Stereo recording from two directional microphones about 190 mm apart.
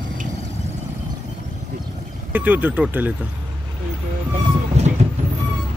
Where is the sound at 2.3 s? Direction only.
10° right (ahead or behind).